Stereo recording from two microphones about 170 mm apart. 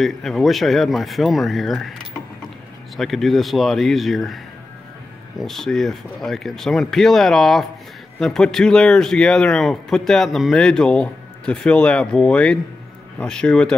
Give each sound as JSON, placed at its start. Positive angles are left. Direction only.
{"t": 0.0, "sound": "speech", "side_deg": 0}
{"t": 3.0, "sound": "speech", "side_deg": 0}
{"t": 5.4, "sound": "speech", "side_deg": 0}